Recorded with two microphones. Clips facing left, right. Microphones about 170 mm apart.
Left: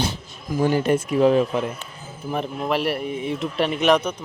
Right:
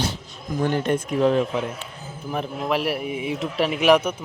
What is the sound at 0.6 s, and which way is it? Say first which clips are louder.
Speech: left 3 dB; 5° left (ahead or behind).